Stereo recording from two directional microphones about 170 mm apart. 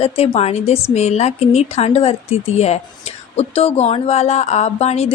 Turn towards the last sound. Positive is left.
turn(degrees=40)  # may be behind; listen again after turning